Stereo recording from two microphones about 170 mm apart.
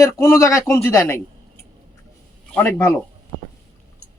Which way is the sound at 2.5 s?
15° left (ahead or behind).